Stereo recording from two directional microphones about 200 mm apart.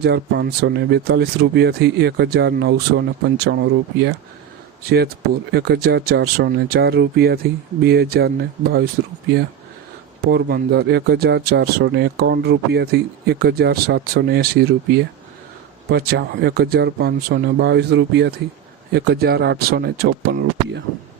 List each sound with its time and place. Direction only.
0.0 s speech: 55° right (ahead or behind)
10.2 s speech: 55° right (ahead or behind)